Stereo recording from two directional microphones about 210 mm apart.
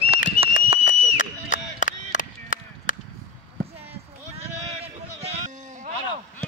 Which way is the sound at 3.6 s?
30° right (ahead or behind).